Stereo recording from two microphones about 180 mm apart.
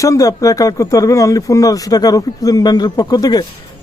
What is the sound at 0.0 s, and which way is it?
Speech, 20° left (ahead or behind).